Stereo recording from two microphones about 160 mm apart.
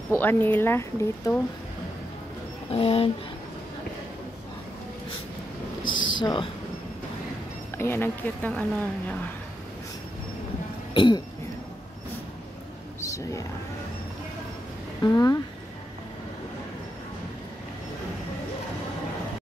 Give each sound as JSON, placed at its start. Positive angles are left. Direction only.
{"t": 0.1, "sound": "speech", "side_deg": 10}
{"t": 2.7, "sound": "speech", "side_deg": 40}
{"t": 5.9, "sound": "a sound", "side_deg": 30}
{"t": 7.7, "sound": "speech", "side_deg": 15}
{"t": 10.9, "sound": "cough", "side_deg": 30}
{"t": 13.0, "sound": "a sound", "side_deg": 20}
{"t": 15.0, "sound": "speech", "side_deg": 20}